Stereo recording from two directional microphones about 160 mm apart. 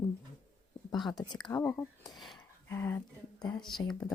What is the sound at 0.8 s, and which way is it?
Speech, 25° left (ahead or behind).